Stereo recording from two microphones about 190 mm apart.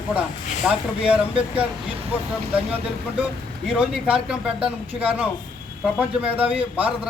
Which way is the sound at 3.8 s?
5° right (ahead or behind).